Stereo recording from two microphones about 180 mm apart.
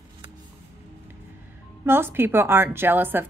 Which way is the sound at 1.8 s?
10° right (ahead or behind).